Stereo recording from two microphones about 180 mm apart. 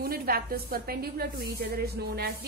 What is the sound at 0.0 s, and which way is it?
A woman's voice, 55° right (ahead or behind).